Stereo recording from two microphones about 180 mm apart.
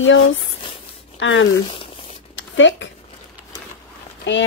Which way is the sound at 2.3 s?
90° left.